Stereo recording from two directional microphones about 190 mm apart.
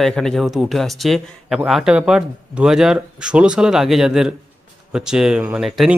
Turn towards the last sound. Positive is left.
turn(degrees=0)  # may be behind; listen again after turning